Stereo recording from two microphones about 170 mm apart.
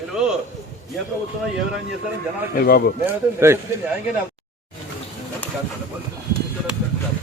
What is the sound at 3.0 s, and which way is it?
Speech, 15° right (ahead or behind).